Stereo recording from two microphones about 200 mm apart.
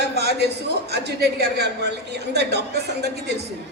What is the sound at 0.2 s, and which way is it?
Speech, 55° right (ahead or behind).